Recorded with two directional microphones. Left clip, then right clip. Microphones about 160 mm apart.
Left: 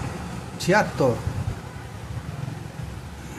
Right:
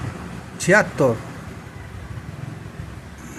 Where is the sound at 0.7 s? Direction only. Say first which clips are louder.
Right 4 dB; 20° right (ahead or behind).